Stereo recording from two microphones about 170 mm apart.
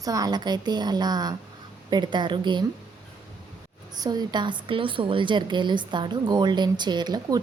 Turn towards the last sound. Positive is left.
turn(degrees=-25)  # may be behind; listen again after turning